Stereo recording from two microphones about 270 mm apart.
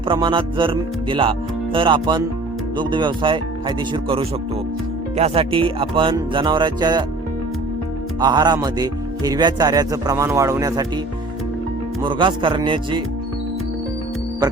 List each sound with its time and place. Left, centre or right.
0.1 s music: centre
2.7 s speech: centre
5.1 s music: right
8.2 s speech: centre
12.0 s speech: centre